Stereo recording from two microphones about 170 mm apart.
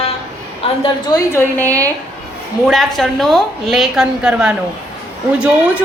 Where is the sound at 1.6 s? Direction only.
20° right (ahead or behind).